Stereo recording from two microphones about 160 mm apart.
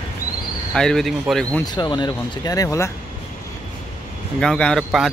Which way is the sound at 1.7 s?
25° left (ahead or behind).